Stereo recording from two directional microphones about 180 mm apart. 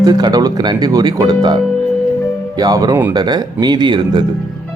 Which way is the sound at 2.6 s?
20° right (ahead or behind).